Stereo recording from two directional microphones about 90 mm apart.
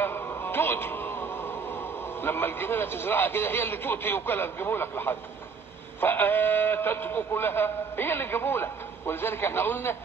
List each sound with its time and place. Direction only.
0.0 s a man's voice: 25° left (ahead or behind)